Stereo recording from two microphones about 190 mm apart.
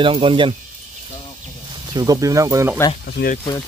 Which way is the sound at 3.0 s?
60° left (ahead or behind).